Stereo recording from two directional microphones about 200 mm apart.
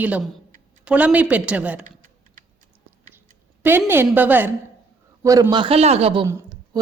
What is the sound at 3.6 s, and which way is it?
A woman's voice, 10° right (ahead or behind).